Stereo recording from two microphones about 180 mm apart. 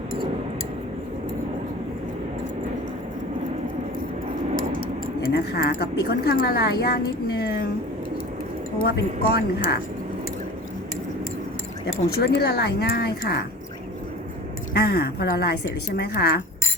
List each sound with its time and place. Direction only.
5.2 s a woman's voice: 60° left (ahead or behind)
8.8 s a woman's voice: 60° left (ahead or behind)
12.2 s a woman's voice: 65° left (ahead or behind)
14.8 s a woman's voice: 60° left (ahead or behind)